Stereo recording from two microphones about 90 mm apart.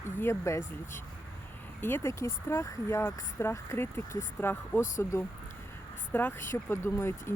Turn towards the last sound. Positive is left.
turn(degrees=30)  # may be behind; listen again after turning